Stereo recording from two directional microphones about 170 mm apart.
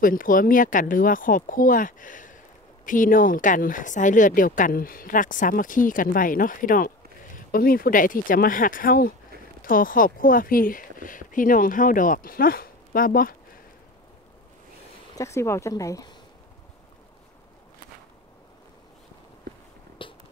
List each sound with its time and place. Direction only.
0.0 s speech: 55° left (ahead or behind)
15.1 s speech: 15° left (ahead or behind)
20.0 s a sound: 30° left (ahead or behind)